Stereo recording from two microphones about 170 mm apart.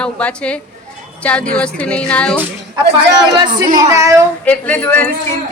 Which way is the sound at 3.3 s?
25° right (ahead or behind).